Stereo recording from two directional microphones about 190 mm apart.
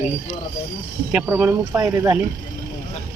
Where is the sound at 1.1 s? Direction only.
5° right (ahead or behind).